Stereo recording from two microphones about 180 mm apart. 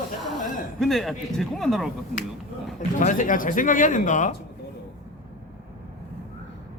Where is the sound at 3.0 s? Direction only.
45° left (ahead or behind).